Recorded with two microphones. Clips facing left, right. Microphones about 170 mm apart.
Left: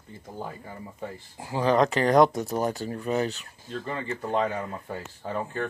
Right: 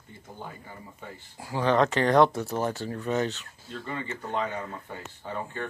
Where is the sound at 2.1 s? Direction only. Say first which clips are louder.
Left 2 dB; 15° left (ahead or behind).